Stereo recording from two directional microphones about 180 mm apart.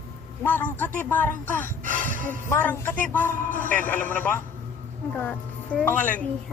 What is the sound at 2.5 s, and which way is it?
Speech, 10° left (ahead or behind).